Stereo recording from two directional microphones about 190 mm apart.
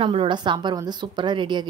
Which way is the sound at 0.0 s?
30° right (ahead or behind).